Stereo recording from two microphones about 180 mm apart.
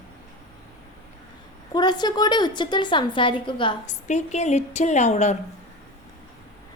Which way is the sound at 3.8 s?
40° left (ahead or behind).